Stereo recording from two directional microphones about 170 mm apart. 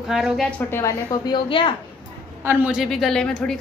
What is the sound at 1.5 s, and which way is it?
Speech, 30° left (ahead or behind).